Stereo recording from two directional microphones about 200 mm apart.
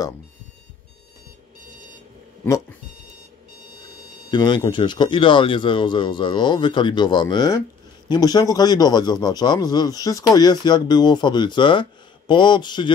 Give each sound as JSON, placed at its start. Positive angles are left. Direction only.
{"t": 4.3, "sound": "a man's voice", "side_deg": 20}